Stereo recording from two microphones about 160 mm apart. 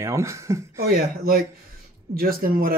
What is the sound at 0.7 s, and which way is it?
Speech, 70° right (ahead or behind).